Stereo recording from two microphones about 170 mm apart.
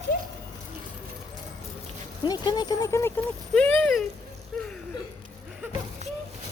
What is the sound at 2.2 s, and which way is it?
Speech, 25° left (ahead or behind).